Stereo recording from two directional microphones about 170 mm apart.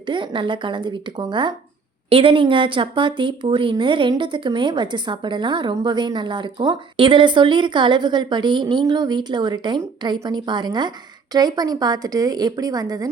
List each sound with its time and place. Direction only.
0.0 s speech: 30° right (ahead or behind)